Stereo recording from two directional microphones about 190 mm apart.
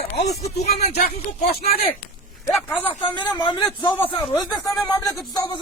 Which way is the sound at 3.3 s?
25° left (ahead or behind).